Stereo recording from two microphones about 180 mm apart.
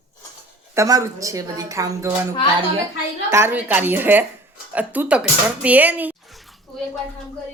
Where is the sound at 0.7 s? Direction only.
15° right (ahead or behind).